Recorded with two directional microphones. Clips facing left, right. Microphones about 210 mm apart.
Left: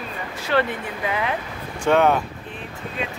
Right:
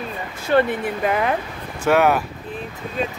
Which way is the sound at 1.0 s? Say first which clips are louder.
Right 4 dB; 45° right (ahead or behind).